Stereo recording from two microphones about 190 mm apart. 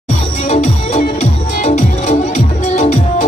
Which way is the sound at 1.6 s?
40° left (ahead or behind).